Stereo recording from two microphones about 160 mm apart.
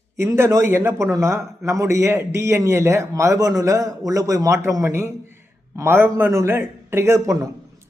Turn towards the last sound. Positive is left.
turn(degrees=-20)  # may be behind; listen again after turning